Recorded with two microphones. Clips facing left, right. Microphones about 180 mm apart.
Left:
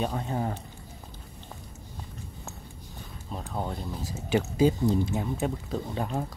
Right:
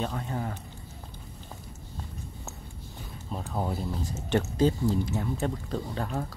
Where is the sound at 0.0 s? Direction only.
20° left (ahead or behind).